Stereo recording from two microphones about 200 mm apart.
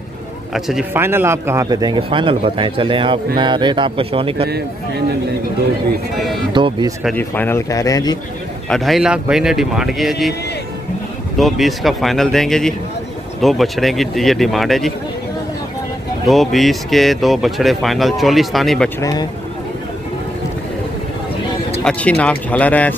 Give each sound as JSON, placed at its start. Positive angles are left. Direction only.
{"t": 0.5, "sound": "a man's voice", "side_deg": 0}
{"t": 4.5, "sound": "speech", "side_deg": -55}
{"t": 6.5, "sound": "a man's voice", "side_deg": -25}
{"t": 7.2, "sound": "a man's voice", "side_deg": 10}
{"t": 8.6, "sound": "speech", "side_deg": 0}
{"t": 11.3, "sound": "speech", "side_deg": 0}
{"t": 16.3, "sound": "speech", "side_deg": 0}
{"t": 18.9, "sound": "a man's voice", "side_deg": 15}
{"t": 21.8, "sound": "a man's voice", "side_deg": 5}